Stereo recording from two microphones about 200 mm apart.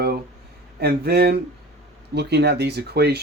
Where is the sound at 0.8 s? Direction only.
55° right (ahead or behind).